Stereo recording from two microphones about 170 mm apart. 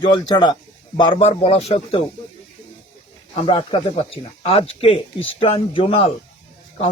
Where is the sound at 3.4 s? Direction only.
30° left (ahead or behind).